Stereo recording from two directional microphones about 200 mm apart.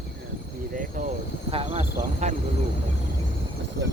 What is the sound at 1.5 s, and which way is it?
Speech, 30° right (ahead or behind).